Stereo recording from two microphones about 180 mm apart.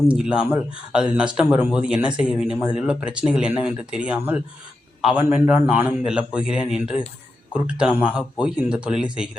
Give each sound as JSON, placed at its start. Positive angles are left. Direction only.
{"t": 0.1, "sound": "speech", "side_deg": -5}